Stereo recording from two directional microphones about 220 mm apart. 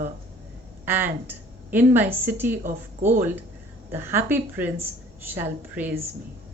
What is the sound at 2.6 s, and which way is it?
Speech, 35° right (ahead or behind).